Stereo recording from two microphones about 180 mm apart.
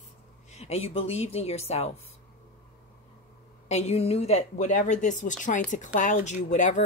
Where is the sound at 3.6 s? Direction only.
35° left (ahead or behind).